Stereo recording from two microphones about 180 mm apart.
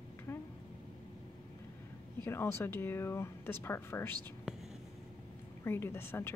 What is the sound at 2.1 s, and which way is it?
Speech, 15° left (ahead or behind).